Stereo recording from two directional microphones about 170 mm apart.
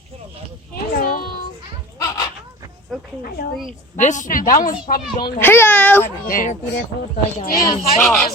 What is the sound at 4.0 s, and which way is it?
Speech, 45° left (ahead or behind).